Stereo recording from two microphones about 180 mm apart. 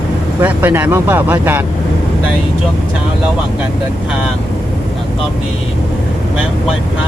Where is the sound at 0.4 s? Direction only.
10° right (ahead or behind).